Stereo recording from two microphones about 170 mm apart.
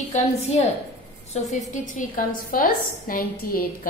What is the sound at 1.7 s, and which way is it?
A woman's voice, 50° left (ahead or behind).